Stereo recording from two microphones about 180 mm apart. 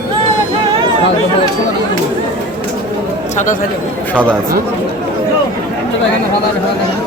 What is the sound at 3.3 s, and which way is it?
Speech, 45° left (ahead or behind).